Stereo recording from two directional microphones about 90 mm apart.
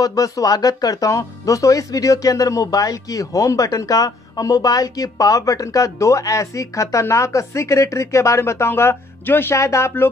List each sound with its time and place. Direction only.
0.0 s speech: 40° left (ahead or behind)